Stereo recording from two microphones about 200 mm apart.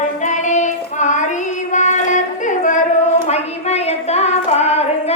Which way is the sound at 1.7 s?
40° left (ahead or behind).